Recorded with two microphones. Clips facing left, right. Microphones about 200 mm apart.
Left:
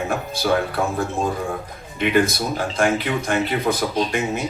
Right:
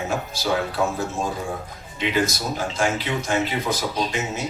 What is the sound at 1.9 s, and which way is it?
A man's voice, 55° left (ahead or behind).